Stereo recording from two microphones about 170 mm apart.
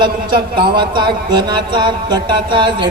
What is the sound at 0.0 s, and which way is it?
Speech, 30° right (ahead or behind).